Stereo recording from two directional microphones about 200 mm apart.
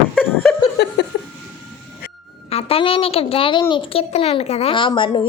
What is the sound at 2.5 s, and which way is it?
A woman's voice, 30° left (ahead or behind).